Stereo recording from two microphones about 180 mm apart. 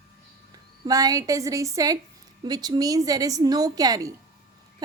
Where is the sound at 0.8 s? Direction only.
20° right (ahead or behind).